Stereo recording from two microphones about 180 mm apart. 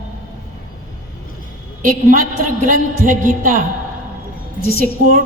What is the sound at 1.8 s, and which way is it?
A woman's voice, 45° right (ahead or behind).